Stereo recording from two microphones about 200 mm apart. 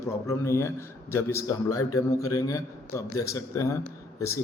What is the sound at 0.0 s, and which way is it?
A man's voice, 15° left (ahead or behind).